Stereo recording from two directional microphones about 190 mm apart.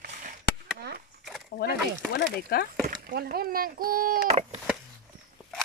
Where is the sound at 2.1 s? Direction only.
55° left (ahead or behind).